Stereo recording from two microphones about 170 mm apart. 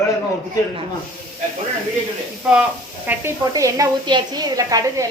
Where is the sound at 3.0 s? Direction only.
10° right (ahead or behind).